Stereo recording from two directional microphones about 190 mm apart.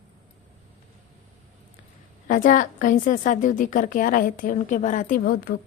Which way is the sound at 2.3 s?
45° left (ahead or behind).